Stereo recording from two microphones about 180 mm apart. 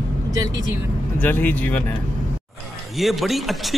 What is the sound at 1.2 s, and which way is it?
Speech, 10° left (ahead or behind).